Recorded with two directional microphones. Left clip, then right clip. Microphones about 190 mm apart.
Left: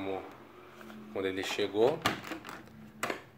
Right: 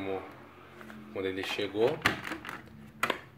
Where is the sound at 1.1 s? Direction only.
15° left (ahead or behind).